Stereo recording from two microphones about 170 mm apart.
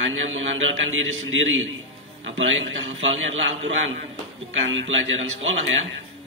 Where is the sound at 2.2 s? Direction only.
90° right.